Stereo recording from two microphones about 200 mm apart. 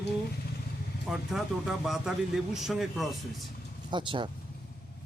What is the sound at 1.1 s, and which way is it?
Speech, centre (ahead or behind).